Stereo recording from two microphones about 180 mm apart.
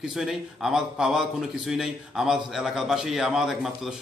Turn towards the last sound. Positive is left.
turn(degrees=0)  # may be behind; listen again after turning